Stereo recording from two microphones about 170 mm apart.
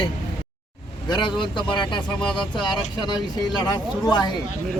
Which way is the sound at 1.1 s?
25° left (ahead or behind).